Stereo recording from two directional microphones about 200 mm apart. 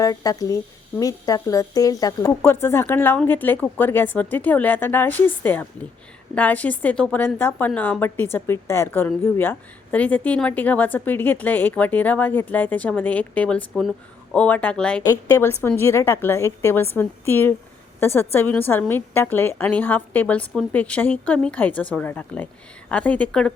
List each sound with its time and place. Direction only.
0.0 s a woman's voice: 20° left (ahead or behind)